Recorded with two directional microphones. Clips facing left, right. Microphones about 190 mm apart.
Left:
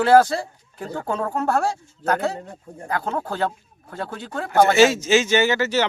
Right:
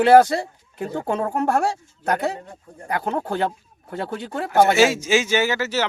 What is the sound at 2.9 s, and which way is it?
Speech, 20° right (ahead or behind).